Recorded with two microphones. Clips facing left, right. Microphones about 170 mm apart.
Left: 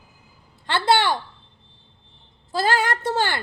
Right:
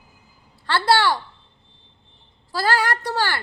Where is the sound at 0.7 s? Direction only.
20° left (ahead or behind).